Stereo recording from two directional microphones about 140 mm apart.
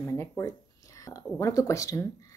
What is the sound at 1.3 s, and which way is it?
Speech, 20° left (ahead or behind).